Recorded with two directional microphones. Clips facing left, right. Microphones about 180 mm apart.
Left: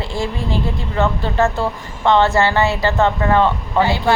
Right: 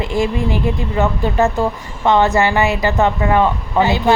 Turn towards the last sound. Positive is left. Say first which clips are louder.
# right 2 dB
turn(degrees=-20)  # may be behind; listen again after turning